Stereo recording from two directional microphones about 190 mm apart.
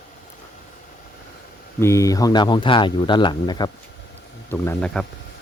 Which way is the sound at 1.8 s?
15° left (ahead or behind).